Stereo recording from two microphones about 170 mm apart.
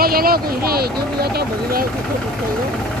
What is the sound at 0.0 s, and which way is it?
Speech, 60° right (ahead or behind).